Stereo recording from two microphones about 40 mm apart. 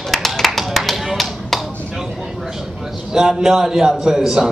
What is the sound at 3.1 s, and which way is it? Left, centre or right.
Speech, centre.